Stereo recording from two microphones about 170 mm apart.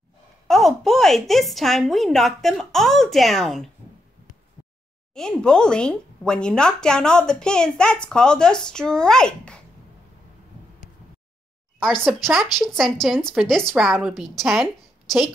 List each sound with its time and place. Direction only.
0.5 s a woman's voice: centre (ahead or behind)
5.1 s a woman's voice: 5° left (ahead or behind)
11.8 s a woman's voice: centre (ahead or behind)